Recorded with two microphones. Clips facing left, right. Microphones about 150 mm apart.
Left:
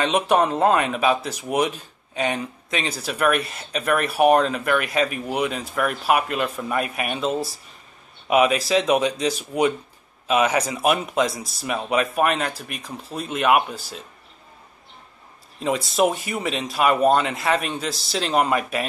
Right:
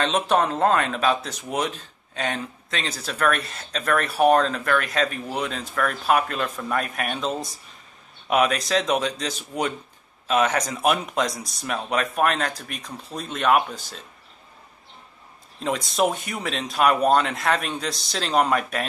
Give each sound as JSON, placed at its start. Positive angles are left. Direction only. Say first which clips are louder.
{"t": 0.0, "sound": "speech", "louder": "left 2 dB", "side_deg": 10}
{"t": 15.6, "sound": "speech", "louder": "left 2 dB", "side_deg": 0}